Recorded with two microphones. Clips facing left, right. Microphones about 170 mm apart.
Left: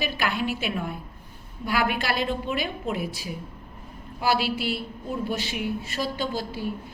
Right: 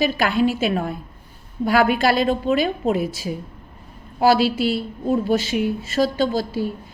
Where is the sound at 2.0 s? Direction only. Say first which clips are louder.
Right 8 dB; 90° right.